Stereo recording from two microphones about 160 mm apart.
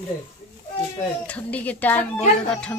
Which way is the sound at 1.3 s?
10° left (ahead or behind).